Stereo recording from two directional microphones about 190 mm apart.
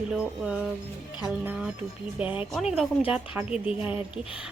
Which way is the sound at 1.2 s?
5° right (ahead or behind).